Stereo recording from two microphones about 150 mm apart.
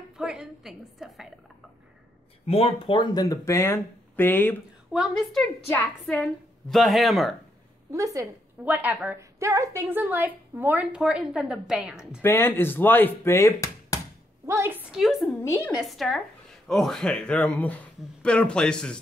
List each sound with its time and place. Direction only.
0.2 s a woman's voice: 5° right (ahead or behind)
2.4 s speech: 40° left (ahead or behind); by 4.6 s 15° left (ahead or behind)
4.9 s a woman's voice: centre (ahead or behind)
5.7 s a woman's voice: 15° left (ahead or behind)
7.9 s a woman's voice: 20° right (ahead or behind)
8.6 s a woman's voice: 10° right (ahead or behind)
12.2 s speech: 15° left (ahead or behind)
14.4 s a woman's voice: 15° right (ahead or behind); by 15.3 s centre (ahead or behind)
15.4 s speech: 20° left (ahead or behind)
15.8 s a woman's voice: centre (ahead or behind)